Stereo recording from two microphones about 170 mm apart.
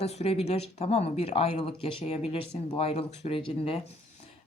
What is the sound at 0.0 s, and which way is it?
Speech, 40° left (ahead or behind).